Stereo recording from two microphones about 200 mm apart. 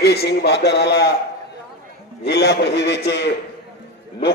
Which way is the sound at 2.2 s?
55° left (ahead or behind).